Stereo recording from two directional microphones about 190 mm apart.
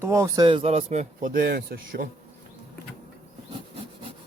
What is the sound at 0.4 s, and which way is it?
Speech, 30° right (ahead or behind).